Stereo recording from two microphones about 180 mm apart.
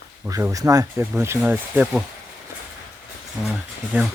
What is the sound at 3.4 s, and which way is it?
Speech, 5° right (ahead or behind).